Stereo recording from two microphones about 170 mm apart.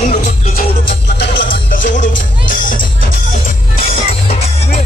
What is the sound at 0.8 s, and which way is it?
Music, 90° left.